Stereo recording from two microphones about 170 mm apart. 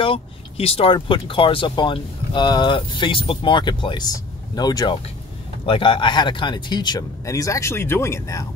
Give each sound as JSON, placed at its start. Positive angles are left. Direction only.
{"t": 0.0, "sound": "speech", "side_deg": 35}